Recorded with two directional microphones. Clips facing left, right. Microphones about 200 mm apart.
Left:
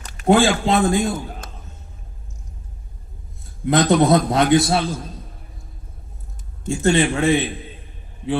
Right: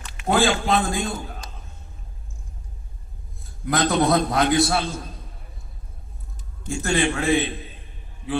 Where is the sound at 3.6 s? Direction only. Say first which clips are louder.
Left 5 dB; 25° left (ahead or behind).